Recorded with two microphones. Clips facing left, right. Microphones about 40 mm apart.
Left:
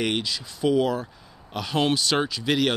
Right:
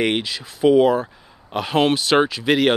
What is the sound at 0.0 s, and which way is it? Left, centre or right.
Speech, right.